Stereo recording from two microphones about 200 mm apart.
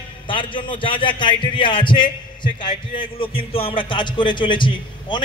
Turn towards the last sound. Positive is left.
turn(degrees=25)  # may be behind; listen again after turning